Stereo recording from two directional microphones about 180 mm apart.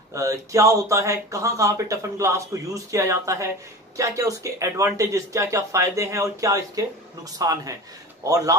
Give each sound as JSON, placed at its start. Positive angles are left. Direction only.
{"t": 0.1, "sound": "a man's voice", "side_deg": -15}